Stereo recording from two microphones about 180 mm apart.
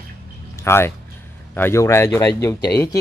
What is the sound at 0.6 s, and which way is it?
Speech, 15° left (ahead or behind).